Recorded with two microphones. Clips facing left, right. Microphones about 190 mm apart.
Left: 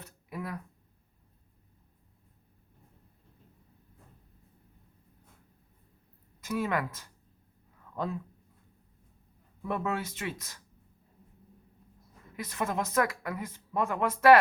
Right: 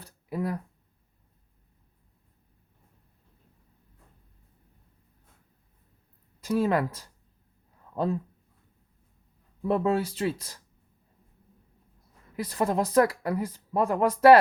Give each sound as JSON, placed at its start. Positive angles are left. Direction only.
{"t": 0.0, "sound": "a sound", "side_deg": -35}
{"t": 6.4, "sound": "speech", "side_deg": -30}
{"t": 9.6, "sound": "speech", "side_deg": -30}
{"t": 12.4, "sound": "speech", "side_deg": -30}